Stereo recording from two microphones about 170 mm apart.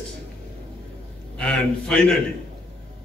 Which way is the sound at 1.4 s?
5° left (ahead or behind).